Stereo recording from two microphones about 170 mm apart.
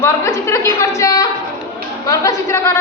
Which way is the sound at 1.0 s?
20° left (ahead or behind).